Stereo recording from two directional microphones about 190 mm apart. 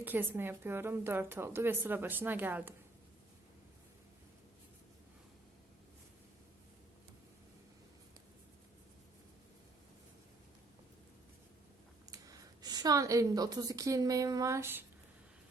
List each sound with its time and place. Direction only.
0.0 s a woman's voice: 10° right (ahead or behind)
12.1 s a woman's voice: 20° right (ahead or behind)